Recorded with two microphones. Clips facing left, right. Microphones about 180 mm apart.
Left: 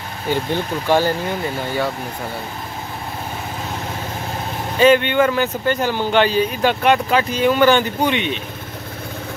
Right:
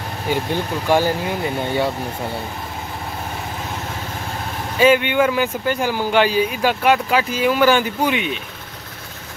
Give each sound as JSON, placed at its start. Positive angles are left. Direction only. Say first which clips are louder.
{"t": 0.3, "sound": "speech", "louder": "left 1 dB", "side_deg": -10}
{"t": 1.6, "sound": "speech", "louder": "right 3 dB", "side_deg": -25}
{"t": 4.7, "sound": "speech", "louder": "left 1 dB", "side_deg": -5}